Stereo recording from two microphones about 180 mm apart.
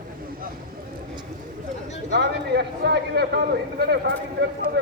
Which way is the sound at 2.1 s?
70° right (ahead or behind).